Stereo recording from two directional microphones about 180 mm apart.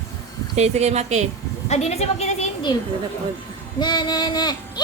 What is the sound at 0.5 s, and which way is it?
Speech, 35° right (ahead or behind).